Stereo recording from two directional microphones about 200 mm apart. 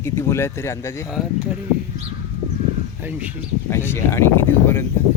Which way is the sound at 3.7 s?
10° left (ahead or behind).